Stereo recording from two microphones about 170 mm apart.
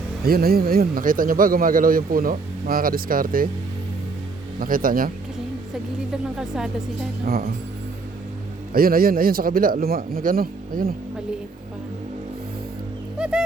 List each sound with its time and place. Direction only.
0.3 s a man's voice: 65° right (ahead or behind)
4.6 s a man's voice: 55° right (ahead or behind)
6.4 s speech: 5° right (ahead or behind)
7.3 s a man's voice: 65° right (ahead or behind)
8.7 s a man's voice: 60° right (ahead or behind)
13.1 s a sound: 5° right (ahead or behind)